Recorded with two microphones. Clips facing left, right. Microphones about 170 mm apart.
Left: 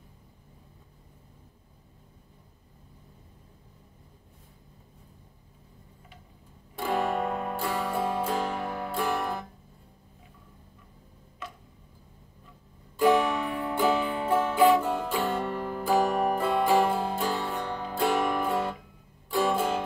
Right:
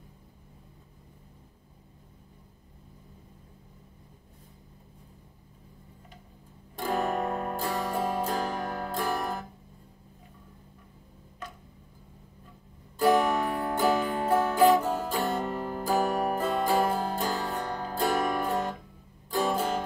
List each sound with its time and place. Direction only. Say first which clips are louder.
6.7 s music: left 1 dB; 40° right (ahead or behind)
13.0 s music: even; 40° right (ahead or behind)